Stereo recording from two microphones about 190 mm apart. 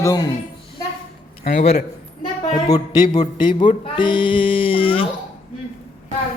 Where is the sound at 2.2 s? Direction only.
20° left (ahead or behind).